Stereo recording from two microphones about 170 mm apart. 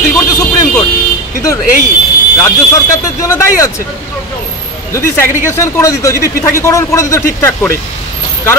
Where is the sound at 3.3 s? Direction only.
20° left (ahead or behind).